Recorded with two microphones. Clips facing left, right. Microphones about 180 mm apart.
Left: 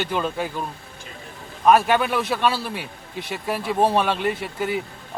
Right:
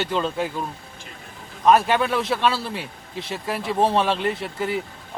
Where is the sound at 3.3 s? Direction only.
Centre (ahead or behind).